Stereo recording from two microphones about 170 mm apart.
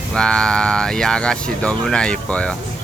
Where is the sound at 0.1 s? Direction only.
5° left (ahead or behind).